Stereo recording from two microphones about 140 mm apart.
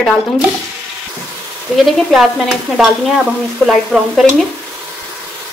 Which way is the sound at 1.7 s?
Centre (ahead or behind).